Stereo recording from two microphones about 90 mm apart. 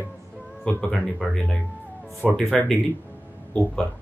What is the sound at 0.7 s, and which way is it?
Speech, 10° left (ahead or behind).